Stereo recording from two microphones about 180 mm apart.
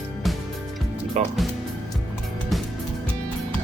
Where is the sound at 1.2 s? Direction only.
40° right (ahead or behind).